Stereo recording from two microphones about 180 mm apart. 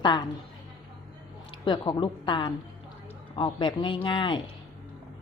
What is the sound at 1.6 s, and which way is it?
Speech, 25° left (ahead or behind).